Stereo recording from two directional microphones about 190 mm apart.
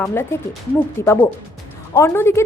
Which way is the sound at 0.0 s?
15° left (ahead or behind).